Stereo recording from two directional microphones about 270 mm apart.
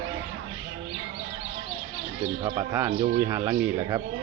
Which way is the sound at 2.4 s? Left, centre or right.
Centre.